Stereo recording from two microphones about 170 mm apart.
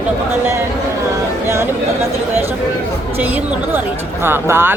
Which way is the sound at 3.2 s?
10° right (ahead or behind).